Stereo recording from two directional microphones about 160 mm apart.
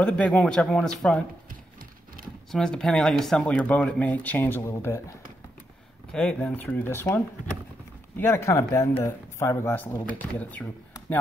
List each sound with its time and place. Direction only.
0.0 s speech: 5° left (ahead or behind)
2.5 s speech: 5° left (ahead or behind)
6.1 s speech: 5° left (ahead or behind)